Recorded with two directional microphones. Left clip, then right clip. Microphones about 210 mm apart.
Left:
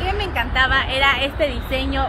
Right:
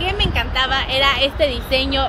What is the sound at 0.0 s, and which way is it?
Speech, 50° right (ahead or behind).